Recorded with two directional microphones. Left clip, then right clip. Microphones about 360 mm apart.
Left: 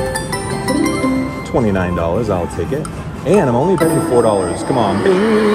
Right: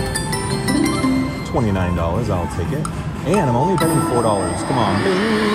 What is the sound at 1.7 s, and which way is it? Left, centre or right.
Speech, left.